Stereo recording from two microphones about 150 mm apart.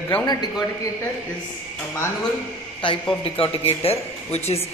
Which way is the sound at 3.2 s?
40° left (ahead or behind).